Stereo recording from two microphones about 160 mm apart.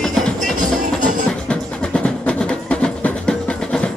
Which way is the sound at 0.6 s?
55° right (ahead or behind).